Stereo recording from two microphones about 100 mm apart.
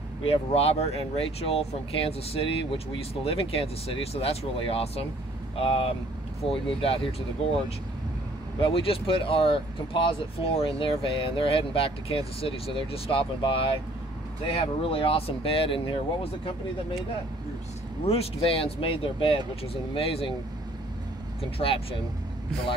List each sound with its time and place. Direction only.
0.3 s speech: 80° left
8.5 s speech: 65° left (ahead or behind)
18.0 s speech: 85° left; by 20.3 s 65° left (ahead or behind)
21.4 s speech: 70° left (ahead or behind)